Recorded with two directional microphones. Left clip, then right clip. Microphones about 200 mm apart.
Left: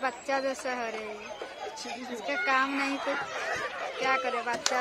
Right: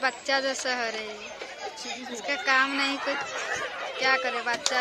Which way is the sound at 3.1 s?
50° left (ahead or behind).